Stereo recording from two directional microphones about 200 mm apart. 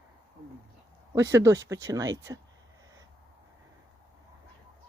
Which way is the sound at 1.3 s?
15° right (ahead or behind).